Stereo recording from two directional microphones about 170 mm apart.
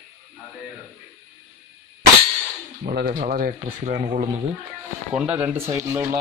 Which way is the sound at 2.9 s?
55° right (ahead or behind).